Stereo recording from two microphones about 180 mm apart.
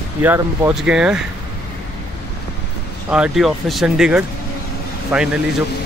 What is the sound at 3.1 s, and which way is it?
Speech, 5° right (ahead or behind).